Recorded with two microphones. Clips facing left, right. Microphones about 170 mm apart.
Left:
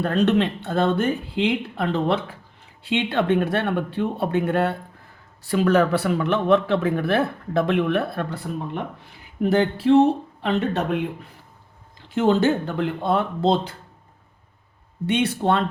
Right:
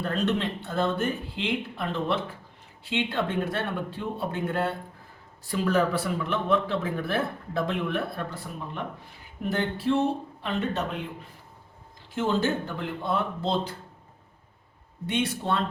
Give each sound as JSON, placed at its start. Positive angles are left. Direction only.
{"t": 0.0, "sound": "a man's voice", "side_deg": 65}
{"t": 9.5, "sound": "a man's voice", "side_deg": 70}
{"t": 12.1, "sound": "a man's voice", "side_deg": 70}
{"t": 15.0, "sound": "a man's voice", "side_deg": 70}